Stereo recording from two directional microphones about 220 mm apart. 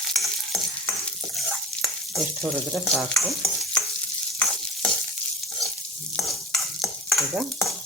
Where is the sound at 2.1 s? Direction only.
Centre (ahead or behind).